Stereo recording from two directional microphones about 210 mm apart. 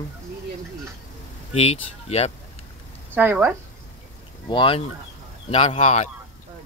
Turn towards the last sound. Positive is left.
turn(degrees=30)  # may be behind; listen again after turning